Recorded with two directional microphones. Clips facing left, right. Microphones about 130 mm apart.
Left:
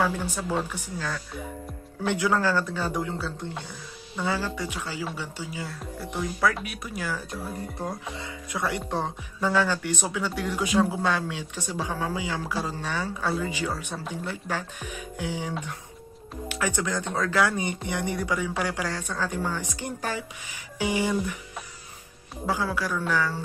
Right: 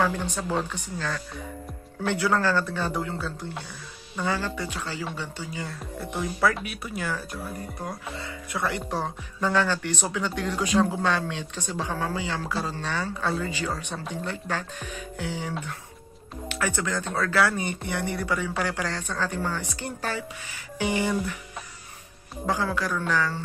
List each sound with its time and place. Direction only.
0.0 s speech: 10° left (ahead or behind)
7.8 s speech: 15° left (ahead or behind)
22.5 s speech: 10° left (ahead or behind)